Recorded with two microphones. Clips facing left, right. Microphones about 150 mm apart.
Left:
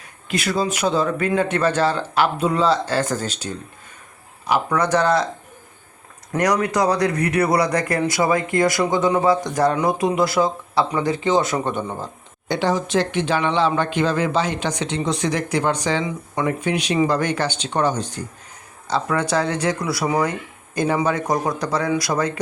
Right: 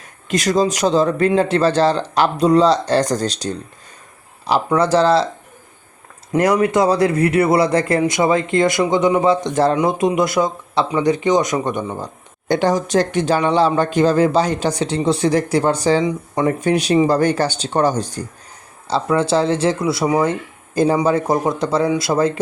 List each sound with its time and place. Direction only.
0.3 s speech: 40° right (ahead or behind)
1.3 s speech: 30° right (ahead or behind)
6.3 s speech: 25° right (ahead or behind)
12.5 s speech: 45° right (ahead or behind); by 22.3 s 25° right (ahead or behind)